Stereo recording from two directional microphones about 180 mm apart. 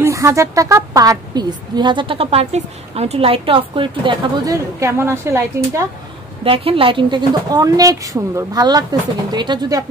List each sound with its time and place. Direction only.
0.0 s a woman's voice: 15° right (ahead or behind)
6.4 s a woman's voice: 30° right (ahead or behind)